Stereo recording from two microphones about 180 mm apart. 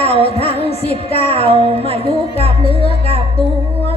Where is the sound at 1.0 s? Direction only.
35° left (ahead or behind).